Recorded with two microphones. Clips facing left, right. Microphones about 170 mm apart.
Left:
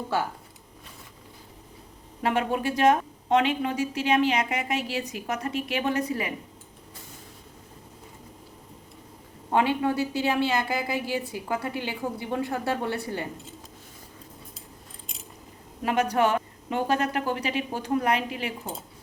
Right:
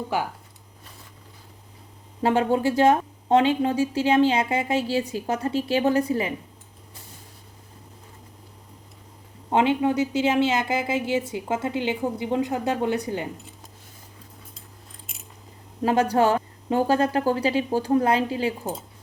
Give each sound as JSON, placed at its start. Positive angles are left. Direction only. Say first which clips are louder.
{"t": 0.1, "sound": "speech", "louder": "right 1 dB", "side_deg": -15}
{"t": 2.2, "sound": "speech", "louder": "right 5 dB", "side_deg": -30}
{"t": 9.5, "sound": "speech", "louder": "right 3 dB", "side_deg": -20}
{"t": 15.8, "sound": "a woman's voice", "louder": "right 4 dB", "side_deg": -30}